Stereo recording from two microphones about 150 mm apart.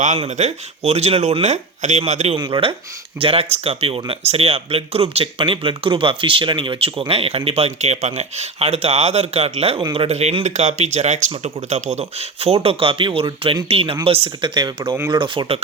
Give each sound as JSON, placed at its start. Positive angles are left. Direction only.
{"t": 0.0, "sound": "speech", "side_deg": -50}
{"t": 2.3, "sound": "speech", "side_deg": -35}